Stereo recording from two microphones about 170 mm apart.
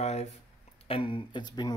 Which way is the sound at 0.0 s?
40° left (ahead or behind).